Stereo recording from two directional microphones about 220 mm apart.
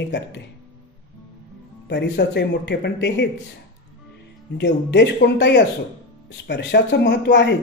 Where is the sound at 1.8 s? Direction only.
50° left (ahead or behind).